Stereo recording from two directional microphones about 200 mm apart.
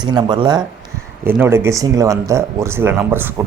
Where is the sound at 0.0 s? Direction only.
20° right (ahead or behind).